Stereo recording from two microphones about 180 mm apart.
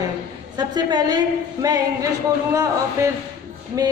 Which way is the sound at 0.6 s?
25° right (ahead or behind).